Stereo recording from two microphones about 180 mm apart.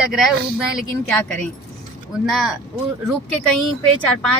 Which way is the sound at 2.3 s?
Centre (ahead or behind).